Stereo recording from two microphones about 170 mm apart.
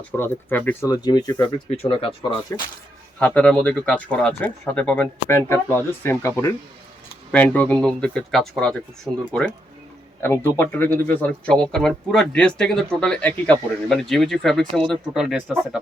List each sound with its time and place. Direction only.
0.2 s speech: 10° left (ahead or behind)
0.9 s speech: 25° left (ahead or behind)
2.5 s speech: 20° left (ahead or behind)
3.2 s speech: 5° left (ahead or behind)
9.1 s speech: 5° right (ahead or behind)
10.2 s speech: 10° left (ahead or behind)